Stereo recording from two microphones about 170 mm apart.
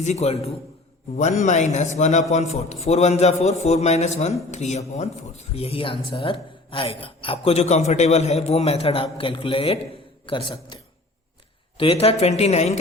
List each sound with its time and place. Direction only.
0.0 s a man's voice: 40° left (ahead or behind)
11.8 s a man's voice: 35° left (ahead or behind)